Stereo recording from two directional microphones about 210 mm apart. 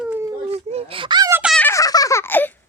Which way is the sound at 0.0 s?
10° right (ahead or behind).